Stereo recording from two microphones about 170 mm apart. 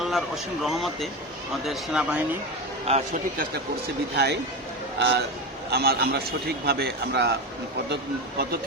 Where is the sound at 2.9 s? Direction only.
35° right (ahead or behind).